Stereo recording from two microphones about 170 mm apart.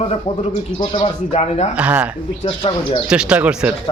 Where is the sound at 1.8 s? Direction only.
10° right (ahead or behind).